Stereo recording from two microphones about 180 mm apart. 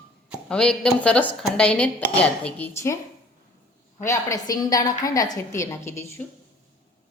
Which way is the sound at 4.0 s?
15° left (ahead or behind).